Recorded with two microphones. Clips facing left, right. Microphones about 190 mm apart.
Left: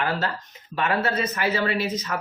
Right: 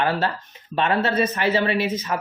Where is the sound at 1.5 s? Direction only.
20° right (ahead or behind).